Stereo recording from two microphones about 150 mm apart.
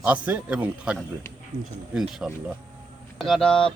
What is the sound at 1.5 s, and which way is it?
Speech, 30° right (ahead or behind).